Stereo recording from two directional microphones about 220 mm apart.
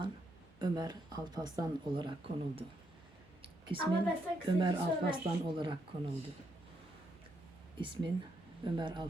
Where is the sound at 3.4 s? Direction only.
25° right (ahead or behind).